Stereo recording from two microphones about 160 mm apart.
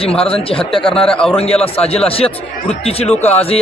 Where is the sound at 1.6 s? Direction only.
40° left (ahead or behind).